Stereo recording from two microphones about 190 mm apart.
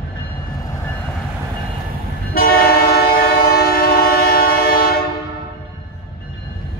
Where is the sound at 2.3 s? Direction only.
50° left (ahead or behind).